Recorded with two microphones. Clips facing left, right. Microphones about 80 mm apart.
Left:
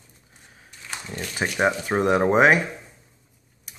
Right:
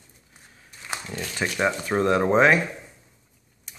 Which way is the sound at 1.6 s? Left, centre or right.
Left.